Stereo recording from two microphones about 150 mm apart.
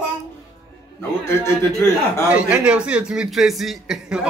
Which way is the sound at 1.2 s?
15° left (ahead or behind).